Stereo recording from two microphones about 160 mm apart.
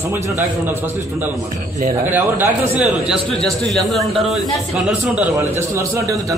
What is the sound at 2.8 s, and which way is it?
A man's voice, centre (ahead or behind).